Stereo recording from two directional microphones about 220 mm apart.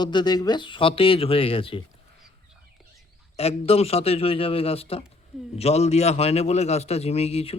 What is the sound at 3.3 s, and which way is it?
A man's voice, 30° left (ahead or behind).